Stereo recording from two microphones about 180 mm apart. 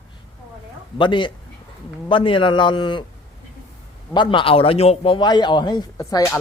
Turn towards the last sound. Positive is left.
turn(degrees=20)  # may be behind; listen again after turning